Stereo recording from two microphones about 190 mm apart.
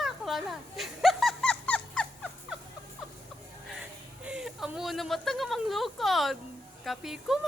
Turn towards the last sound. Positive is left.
turn(degrees=0)  # may be behind; listen again after turning